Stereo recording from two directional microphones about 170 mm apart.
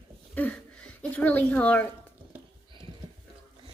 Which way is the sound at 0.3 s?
10° left (ahead or behind).